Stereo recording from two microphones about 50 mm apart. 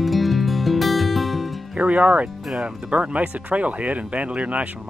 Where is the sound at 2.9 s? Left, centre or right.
Right.